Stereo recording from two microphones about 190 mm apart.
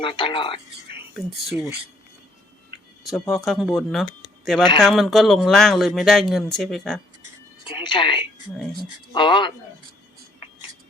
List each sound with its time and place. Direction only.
0.0 s speech: 25° left (ahead or behind)
1.1 s speech: centre (ahead or behind)
3.0 s speech: centre (ahead or behind)
7.6 s speech: 25° left (ahead or behind)